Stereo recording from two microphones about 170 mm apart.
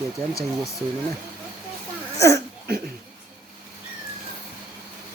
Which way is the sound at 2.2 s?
15° left (ahead or behind).